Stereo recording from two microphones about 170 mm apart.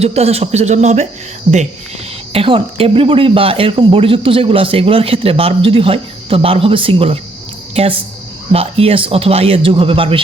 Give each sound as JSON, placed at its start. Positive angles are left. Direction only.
{"t": 0.0, "sound": "speech", "side_deg": -35}
{"t": 1.5, "sound": "speech", "side_deg": -30}